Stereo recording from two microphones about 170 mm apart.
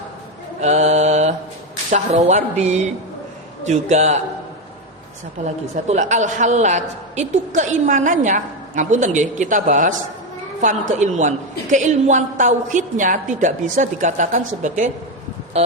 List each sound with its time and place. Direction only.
0.6 s mantra: 40° right (ahead or behind)
1.9 s a woman's voice: 45° right (ahead or behind)
5.4 s a woman's voice: 45° right (ahead or behind)